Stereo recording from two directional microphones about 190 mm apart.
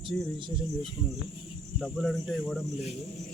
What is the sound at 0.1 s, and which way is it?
Speech, 10° left (ahead or behind).